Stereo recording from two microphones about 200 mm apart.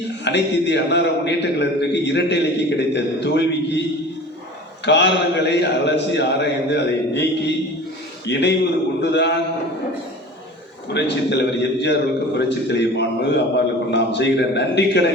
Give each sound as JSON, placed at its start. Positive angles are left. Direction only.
{"t": 0.3, "sound": "a man's voice", "side_deg": 60}
{"t": 4.9, "sound": "a man's voice", "side_deg": 60}
{"t": 10.9, "sound": "a man's voice", "side_deg": 60}